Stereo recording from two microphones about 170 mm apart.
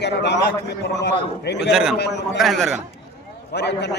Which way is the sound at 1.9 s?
85° left.